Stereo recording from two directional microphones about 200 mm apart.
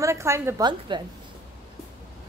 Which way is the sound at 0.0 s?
15° right (ahead or behind).